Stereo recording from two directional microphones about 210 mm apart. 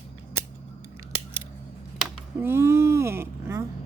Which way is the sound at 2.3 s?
10° right (ahead or behind).